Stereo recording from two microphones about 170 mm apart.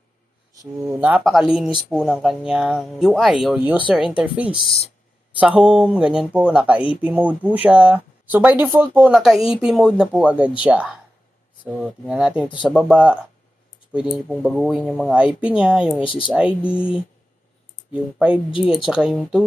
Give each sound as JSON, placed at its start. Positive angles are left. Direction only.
{"t": 0.9, "sound": "speech", "side_deg": -10}
{"t": 1.2, "sound": "speech", "side_deg": 0}
{"t": 16.0, "sound": "speech", "side_deg": 30}
{"t": 16.6, "sound": "speech", "side_deg": -5}